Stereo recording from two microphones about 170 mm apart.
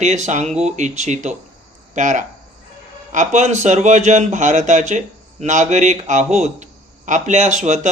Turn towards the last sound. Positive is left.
turn(degrees=-45)  # may be behind; listen again after turning